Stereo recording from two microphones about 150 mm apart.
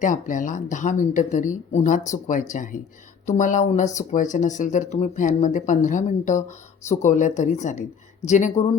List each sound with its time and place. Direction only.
0.0 s speech: 60° left (ahead or behind)